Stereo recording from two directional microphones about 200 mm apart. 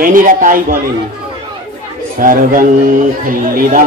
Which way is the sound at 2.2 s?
45° right (ahead or behind).